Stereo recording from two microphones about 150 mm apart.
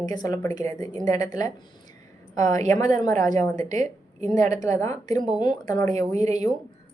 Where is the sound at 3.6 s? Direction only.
55° right (ahead or behind).